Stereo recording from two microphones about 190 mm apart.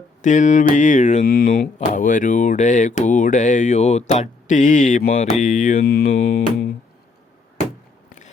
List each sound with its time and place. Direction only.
0.2 s speech: 40° left (ahead or behind)